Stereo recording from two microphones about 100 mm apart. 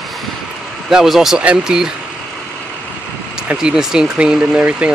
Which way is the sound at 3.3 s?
10° right (ahead or behind).